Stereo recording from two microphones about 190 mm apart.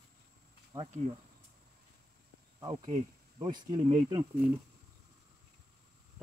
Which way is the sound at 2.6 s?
20° right (ahead or behind).